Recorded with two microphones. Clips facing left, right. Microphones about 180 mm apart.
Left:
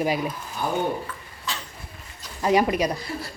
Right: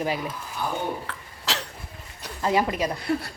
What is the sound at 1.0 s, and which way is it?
Cough, 75° right (ahead or behind).